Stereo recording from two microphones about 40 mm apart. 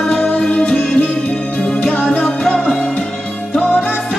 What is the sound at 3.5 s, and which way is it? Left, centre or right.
Music, left.